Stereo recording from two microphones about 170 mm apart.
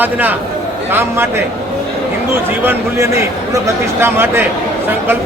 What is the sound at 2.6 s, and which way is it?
A man's voice, 15° right (ahead or behind).